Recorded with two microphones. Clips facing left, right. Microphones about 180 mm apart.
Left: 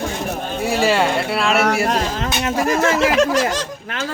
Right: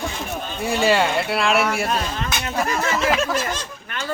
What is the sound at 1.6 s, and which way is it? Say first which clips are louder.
Speech: left 5 dB; 80° left.